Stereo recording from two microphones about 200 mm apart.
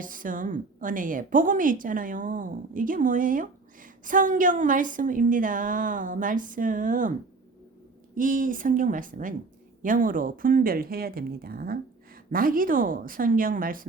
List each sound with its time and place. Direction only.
0.0 s a woman's voice: 40° right (ahead or behind)
8.1 s a woman's voice: 40° right (ahead or behind)